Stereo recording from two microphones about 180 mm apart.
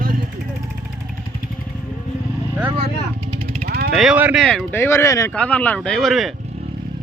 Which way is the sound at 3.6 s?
60° right (ahead or behind).